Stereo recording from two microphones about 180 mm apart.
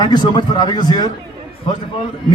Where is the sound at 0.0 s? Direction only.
25° left (ahead or behind).